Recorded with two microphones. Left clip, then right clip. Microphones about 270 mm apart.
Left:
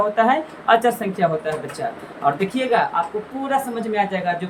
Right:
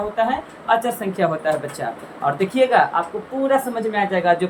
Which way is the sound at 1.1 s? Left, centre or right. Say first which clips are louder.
Right 1 dB; centre.